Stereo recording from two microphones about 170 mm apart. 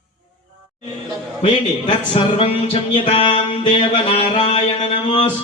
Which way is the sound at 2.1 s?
35° left (ahead or behind).